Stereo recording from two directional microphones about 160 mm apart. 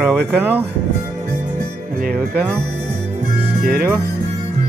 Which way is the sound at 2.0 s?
70° right (ahead or behind).